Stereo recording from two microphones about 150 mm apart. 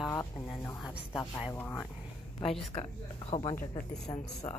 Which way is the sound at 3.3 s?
45° left (ahead or behind).